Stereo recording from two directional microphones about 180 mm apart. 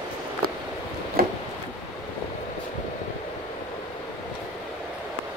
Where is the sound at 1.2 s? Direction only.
55° right (ahead or behind).